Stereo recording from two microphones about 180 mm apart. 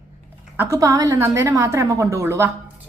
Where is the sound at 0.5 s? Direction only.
15° right (ahead or behind).